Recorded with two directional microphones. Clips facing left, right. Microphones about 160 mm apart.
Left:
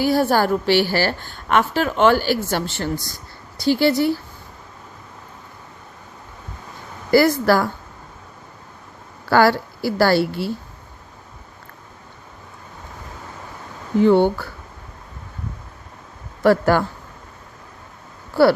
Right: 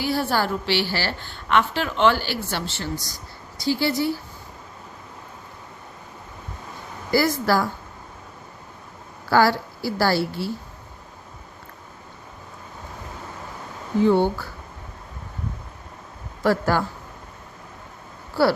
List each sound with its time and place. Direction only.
0.0 s a woman's voice: 45° left (ahead or behind)
3.6 s a woman's voice: 65° left (ahead or behind)
7.1 s a woman's voice: 60° left (ahead or behind)
9.3 s a woman's voice: 60° left (ahead or behind)
14.1 s a woman's voice: 65° left (ahead or behind)
16.4 s a woman's voice: 60° left (ahead or behind)